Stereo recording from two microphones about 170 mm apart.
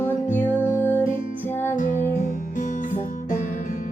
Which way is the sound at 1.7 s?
45° left (ahead or behind).